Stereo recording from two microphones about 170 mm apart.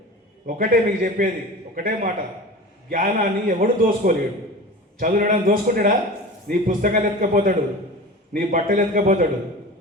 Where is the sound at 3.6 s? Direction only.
55° right (ahead or behind).